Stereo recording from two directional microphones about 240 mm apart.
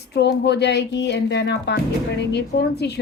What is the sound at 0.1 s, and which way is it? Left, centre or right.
A woman's voice, left.